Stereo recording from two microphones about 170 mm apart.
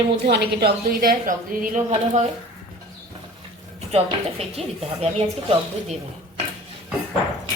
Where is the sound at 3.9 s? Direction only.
35° right (ahead or behind).